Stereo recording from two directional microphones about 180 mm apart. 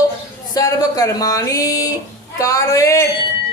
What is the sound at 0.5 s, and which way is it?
A man's voice, 20° left (ahead or behind).